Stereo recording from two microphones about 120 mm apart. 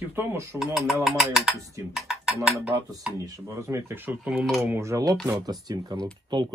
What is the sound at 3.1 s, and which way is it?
Speech, 30° right (ahead or behind).